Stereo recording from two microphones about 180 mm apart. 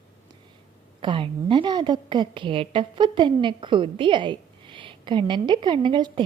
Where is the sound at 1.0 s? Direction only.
30° right (ahead or behind).